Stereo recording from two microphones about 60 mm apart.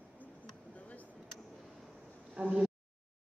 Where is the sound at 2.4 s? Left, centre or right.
Right.